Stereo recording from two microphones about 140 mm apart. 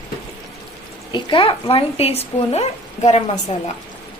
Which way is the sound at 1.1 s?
35° left (ahead or behind).